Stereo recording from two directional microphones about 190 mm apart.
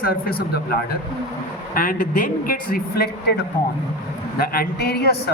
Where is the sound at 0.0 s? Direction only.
55° left (ahead or behind).